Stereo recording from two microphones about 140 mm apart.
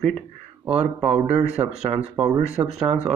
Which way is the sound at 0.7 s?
45° right (ahead or behind).